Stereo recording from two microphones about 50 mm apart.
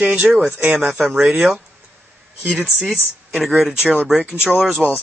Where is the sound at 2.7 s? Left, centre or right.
Centre.